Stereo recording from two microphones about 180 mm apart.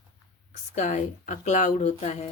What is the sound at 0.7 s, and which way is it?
Speech, 40° left (ahead or behind).